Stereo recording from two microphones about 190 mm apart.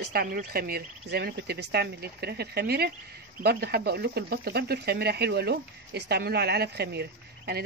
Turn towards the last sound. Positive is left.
turn(degrees=-60)  # may be behind; listen again after turning